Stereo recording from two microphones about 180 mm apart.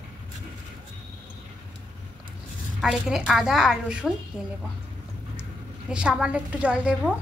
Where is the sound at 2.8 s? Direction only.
5° right (ahead or behind).